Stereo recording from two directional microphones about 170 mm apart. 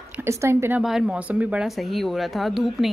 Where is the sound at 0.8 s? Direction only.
5° right (ahead or behind).